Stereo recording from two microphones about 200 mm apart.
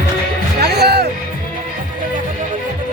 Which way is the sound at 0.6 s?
55° right (ahead or behind).